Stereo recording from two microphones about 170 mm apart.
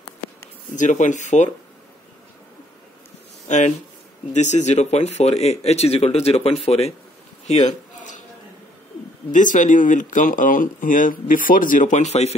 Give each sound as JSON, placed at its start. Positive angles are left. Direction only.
{"t": 0.7, "sound": "speech", "side_deg": 45}
{"t": 3.4, "sound": "speech", "side_deg": 45}
{"t": 7.4, "sound": "a sound", "side_deg": 45}
{"t": 9.3, "sound": "speech", "side_deg": 50}